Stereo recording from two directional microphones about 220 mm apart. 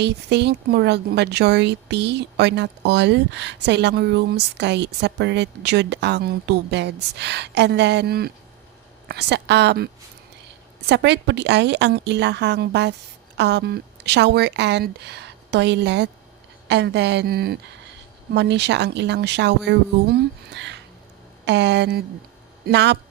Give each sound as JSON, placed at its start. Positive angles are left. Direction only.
{"t": 0.0, "sound": "speech", "side_deg": -50}